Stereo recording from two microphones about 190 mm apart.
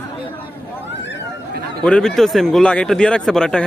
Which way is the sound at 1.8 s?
5° left (ahead or behind).